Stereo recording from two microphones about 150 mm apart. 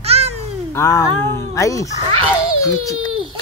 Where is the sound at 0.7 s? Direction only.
20° left (ahead or behind).